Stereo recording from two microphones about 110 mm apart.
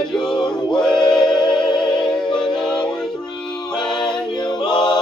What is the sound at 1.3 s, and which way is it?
Music, 45° left (ahead or behind).